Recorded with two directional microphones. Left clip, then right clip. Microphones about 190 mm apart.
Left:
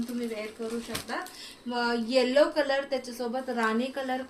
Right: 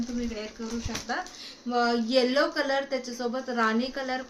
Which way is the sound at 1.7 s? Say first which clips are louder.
Right 2 dB; 20° right (ahead or behind).